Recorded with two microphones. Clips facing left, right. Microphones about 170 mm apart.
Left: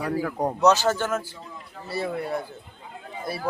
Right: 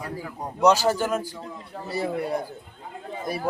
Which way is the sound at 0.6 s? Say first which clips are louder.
Right 1 dB; 10° right (ahead or behind).